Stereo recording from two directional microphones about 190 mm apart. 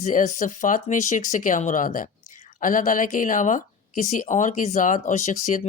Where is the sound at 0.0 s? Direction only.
40° left (ahead or behind).